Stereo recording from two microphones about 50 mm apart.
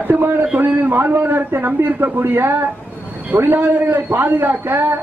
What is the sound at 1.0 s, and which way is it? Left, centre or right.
A man's voice, right.